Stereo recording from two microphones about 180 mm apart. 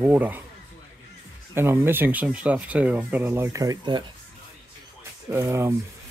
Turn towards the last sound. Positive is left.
turn(degrees=-15)  # may be behind; listen again after turning